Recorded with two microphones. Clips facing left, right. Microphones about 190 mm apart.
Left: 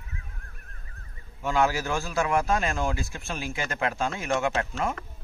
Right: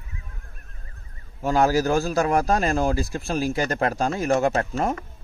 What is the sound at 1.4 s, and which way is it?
Speech, 40° right (ahead or behind).